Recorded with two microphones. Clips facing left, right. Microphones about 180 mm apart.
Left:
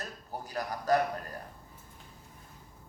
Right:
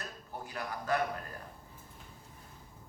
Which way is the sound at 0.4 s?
40° left (ahead or behind).